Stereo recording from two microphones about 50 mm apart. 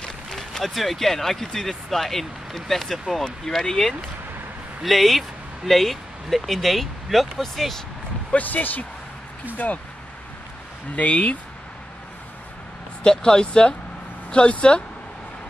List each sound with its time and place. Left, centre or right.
0.4 s speech: centre
8.3 s speech: left
11.0 s speech: left
13.0 s speech: centre